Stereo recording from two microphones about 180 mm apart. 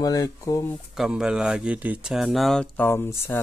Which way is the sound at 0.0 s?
20° left (ahead or behind).